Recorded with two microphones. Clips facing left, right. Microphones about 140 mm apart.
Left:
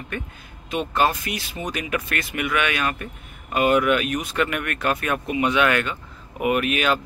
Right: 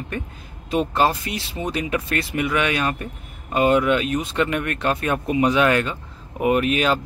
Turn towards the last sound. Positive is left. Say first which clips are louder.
# right 2 dB
turn(degrees=-30)  # may be behind; listen again after turning